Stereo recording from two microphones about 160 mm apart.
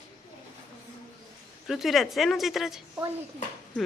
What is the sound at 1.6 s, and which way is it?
Speech, centre (ahead or behind).